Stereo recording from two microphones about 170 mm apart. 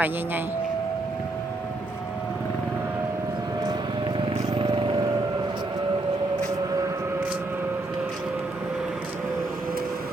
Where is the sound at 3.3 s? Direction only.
25° right (ahead or behind).